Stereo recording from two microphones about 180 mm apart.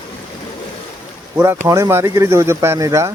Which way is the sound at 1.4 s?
15° right (ahead or behind).